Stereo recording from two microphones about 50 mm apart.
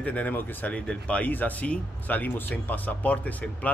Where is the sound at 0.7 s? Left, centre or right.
Left.